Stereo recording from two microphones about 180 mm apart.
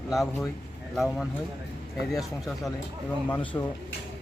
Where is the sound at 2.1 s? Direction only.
Centre (ahead or behind).